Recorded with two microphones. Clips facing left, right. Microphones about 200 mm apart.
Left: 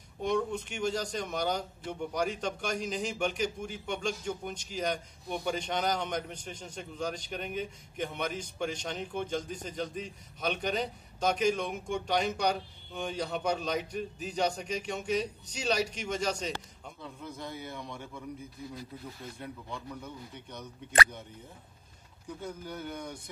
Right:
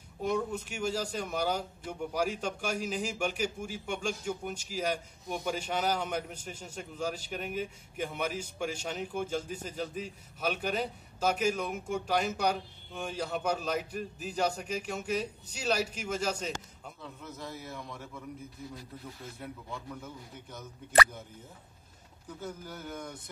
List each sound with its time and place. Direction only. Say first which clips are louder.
0.2 s speech: left 1 dB; 5° right (ahead or behind)
19.3 s speech: left 1 dB; 5° right (ahead or behind)
22.4 s speech: left 1 dB; 5° right (ahead or behind)